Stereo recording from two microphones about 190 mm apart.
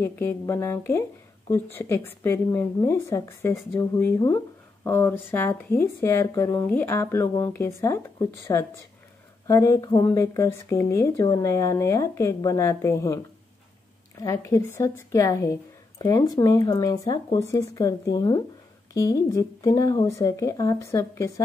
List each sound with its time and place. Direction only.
0.0 s speech: 15° left (ahead or behind)
14.2 s speech: 15° left (ahead or behind)